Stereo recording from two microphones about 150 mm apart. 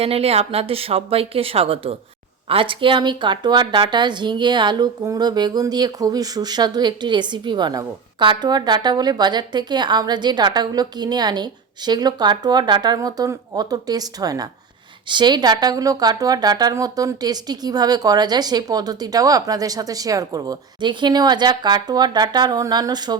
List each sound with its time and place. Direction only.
0.0 s speech: 40° right (ahead or behind)